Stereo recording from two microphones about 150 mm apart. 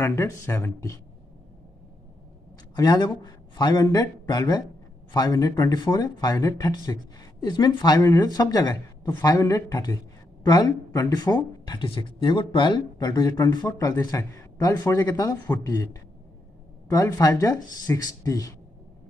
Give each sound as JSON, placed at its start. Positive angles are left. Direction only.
{"t": 0.0, "sound": "speech", "side_deg": 20}
{"t": 2.7, "sound": "speech", "side_deg": 25}